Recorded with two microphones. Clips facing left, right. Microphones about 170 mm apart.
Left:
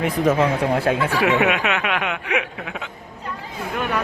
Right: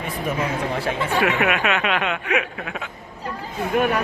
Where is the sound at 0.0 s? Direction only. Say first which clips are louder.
Left 7 dB; 90° left.